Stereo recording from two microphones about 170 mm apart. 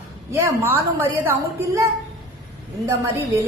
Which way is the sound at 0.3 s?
15° right (ahead or behind).